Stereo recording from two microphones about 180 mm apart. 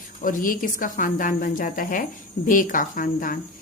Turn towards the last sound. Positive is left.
turn(degrees=50)  # may be behind; listen again after turning